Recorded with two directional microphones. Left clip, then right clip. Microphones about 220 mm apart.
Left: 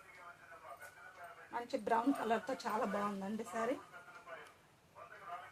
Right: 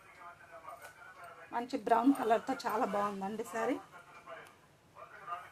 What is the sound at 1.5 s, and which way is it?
A woman's voice, 45° right (ahead or behind).